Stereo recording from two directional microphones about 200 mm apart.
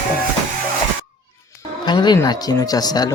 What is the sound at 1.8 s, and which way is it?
Speech, 20° left (ahead or behind).